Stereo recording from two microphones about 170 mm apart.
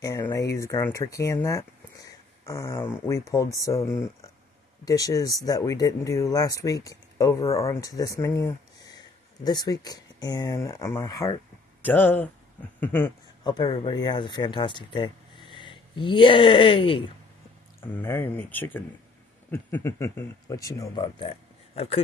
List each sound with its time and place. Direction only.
0.0 s speech: 20° left (ahead or behind)
11.8 s speech: 10° left (ahead or behind)
13.4 s speech: 25° left (ahead or behind)
17.9 s speech: 10° left (ahead or behind); by 22.0 s 35° left (ahead or behind)